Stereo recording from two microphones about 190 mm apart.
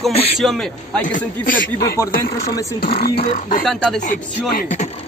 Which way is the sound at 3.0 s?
55° left (ahead or behind).